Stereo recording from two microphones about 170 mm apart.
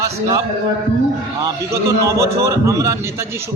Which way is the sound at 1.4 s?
15° right (ahead or behind).